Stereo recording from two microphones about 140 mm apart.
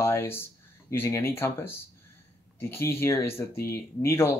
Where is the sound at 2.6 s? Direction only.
20° left (ahead or behind).